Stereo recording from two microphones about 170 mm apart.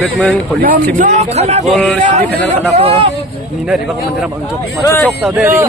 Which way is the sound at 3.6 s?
5° right (ahead or behind).